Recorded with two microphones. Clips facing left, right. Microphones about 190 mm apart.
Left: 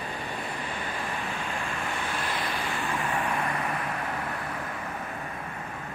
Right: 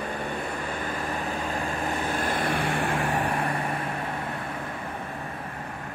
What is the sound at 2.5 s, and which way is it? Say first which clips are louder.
Vehicle: right 6 dB; 75° right (ahead or behind).